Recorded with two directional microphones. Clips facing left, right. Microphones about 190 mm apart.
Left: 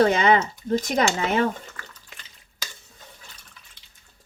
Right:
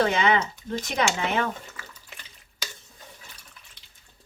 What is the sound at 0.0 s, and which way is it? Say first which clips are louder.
Speech: left 4 dB; 40° left (ahead or behind).